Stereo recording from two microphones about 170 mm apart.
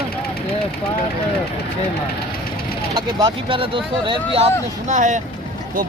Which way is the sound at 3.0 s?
30° right (ahead or behind).